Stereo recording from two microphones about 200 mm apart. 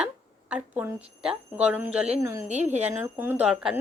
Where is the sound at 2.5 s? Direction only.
35° right (ahead or behind).